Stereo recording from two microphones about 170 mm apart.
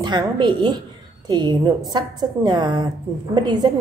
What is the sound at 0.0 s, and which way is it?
A woman's voice, 25° right (ahead or behind).